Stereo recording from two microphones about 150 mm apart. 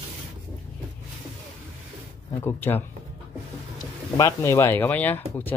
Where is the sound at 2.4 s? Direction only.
15° left (ahead or behind).